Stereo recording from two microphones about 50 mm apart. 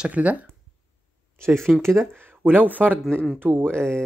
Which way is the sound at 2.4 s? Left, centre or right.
Right.